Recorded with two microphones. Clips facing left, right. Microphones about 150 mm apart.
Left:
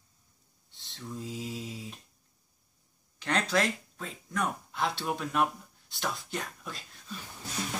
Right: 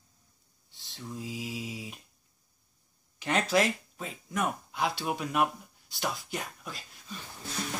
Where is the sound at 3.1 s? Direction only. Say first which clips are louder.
Right 2 dB; 5° right (ahead or behind).